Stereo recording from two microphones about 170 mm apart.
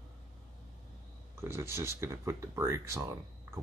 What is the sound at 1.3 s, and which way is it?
Speech, 15° right (ahead or behind).